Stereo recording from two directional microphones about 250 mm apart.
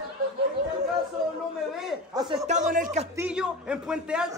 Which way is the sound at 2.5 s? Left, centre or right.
Right.